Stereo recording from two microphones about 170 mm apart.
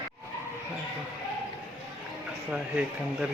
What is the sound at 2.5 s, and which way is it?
Speech, 5° right (ahead or behind).